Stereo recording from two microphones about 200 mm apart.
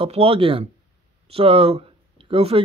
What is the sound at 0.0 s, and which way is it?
A man's voice, 25° right (ahead or behind).